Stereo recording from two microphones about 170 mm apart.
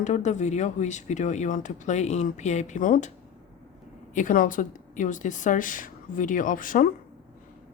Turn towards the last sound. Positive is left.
turn(degrees=55)  # may be behind; listen again after turning